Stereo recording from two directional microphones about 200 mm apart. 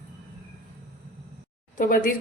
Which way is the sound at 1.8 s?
45° left (ahead or behind).